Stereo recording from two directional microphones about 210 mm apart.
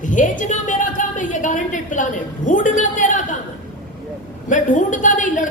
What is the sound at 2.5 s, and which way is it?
Speech, 35° left (ahead or behind).